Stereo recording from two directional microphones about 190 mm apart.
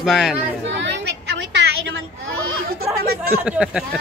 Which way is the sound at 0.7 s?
70° right (ahead or behind).